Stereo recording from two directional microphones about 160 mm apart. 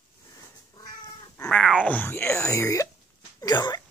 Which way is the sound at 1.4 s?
5° left (ahead or behind).